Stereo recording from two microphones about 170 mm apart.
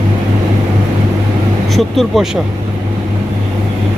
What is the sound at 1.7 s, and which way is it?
Speech, centre (ahead or behind).